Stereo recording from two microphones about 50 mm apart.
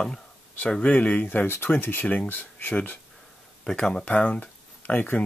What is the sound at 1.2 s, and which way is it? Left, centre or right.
Speech, left.